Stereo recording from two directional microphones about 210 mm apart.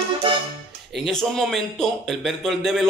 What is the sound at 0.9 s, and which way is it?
A man's voice, centre (ahead or behind).